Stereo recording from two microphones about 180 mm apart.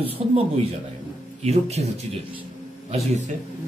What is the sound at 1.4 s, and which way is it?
Speech, 35° right (ahead or behind).